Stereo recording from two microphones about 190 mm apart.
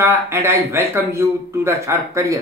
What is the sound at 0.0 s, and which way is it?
Speech, 15° right (ahead or behind).